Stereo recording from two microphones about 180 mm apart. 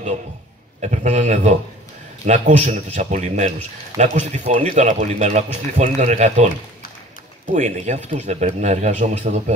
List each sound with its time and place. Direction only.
0.7 s speech: 40° right (ahead or behind)
7.5 s speech: 40° right (ahead or behind)